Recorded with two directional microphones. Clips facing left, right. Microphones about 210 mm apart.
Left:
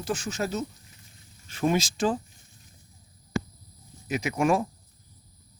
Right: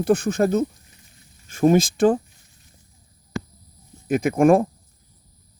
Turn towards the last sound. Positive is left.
turn(degrees=-50)  # may be behind; listen again after turning